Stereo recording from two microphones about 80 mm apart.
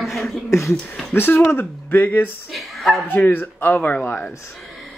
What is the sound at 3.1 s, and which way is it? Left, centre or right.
Speech, left.